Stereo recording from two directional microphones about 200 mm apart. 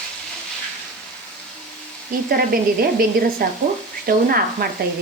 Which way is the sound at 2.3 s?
45° right (ahead or behind).